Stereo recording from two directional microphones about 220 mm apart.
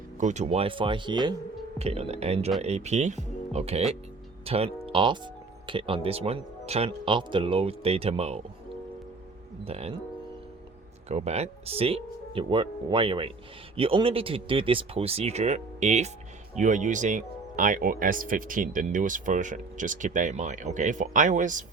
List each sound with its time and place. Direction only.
0.2 s speech: 30° right (ahead or behind)
9.6 s speech: 25° right (ahead or behind)
11.1 s speech: 30° right (ahead or behind)